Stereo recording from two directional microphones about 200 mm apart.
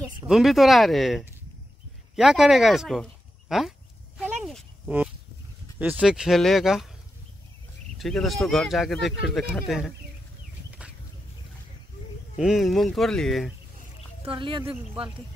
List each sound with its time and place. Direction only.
0.3 s speech: centre (ahead or behind)
4.2 s oink: centre (ahead or behind)
5.8 s speech: 5° right (ahead or behind)
8.0 s speech: centre (ahead or behind)
9.7 s speech: centre (ahead or behind)
12.4 s speech: centre (ahead or behind)
14.2 s speech: 25° right (ahead or behind)